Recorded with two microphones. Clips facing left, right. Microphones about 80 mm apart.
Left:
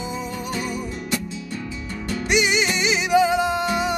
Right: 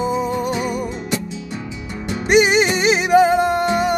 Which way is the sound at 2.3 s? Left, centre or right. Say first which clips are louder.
Right 7 dB; right.